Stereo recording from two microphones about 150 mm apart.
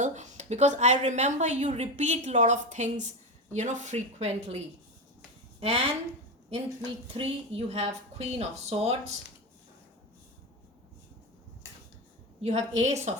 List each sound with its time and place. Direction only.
0.0 s a woman's voice: 50° right (ahead or behind)
7.1 s a woman's voice: 40° right (ahead or behind)
12.4 s a woman's voice: 50° right (ahead or behind)